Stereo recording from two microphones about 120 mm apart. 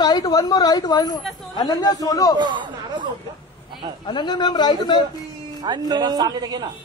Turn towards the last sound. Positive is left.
turn(degrees=-35)  # may be behind; listen again after turning